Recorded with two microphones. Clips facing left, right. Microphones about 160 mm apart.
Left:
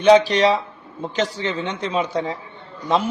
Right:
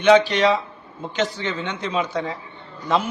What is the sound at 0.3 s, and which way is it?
A man's voice, 35° left (ahead or behind).